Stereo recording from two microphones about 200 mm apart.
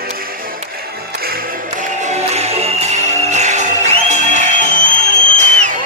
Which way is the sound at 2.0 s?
35° right (ahead or behind).